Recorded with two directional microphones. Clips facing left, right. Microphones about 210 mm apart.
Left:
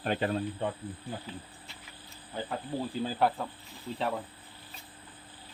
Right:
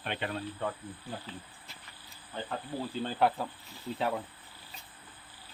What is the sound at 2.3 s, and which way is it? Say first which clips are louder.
Speech: left 2 dB; 10° left (ahead or behind).